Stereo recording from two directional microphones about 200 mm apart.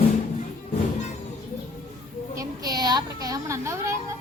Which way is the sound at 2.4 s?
20° right (ahead or behind).